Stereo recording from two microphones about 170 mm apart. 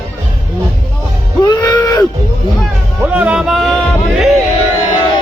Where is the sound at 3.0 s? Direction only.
10° right (ahead or behind).